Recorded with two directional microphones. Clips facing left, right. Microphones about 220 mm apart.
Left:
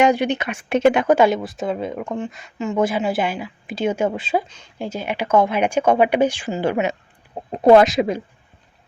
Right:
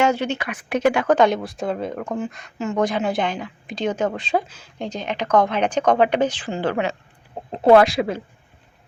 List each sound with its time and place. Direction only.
0.0 s speech: 15° left (ahead or behind)
1.0 s speech: 10° left (ahead or behind)
4.4 s speech: 5° right (ahead or behind)
4.8 s speech: 10° left (ahead or behind)